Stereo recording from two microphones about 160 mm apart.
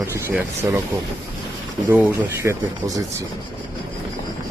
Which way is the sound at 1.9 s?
10° right (ahead or behind).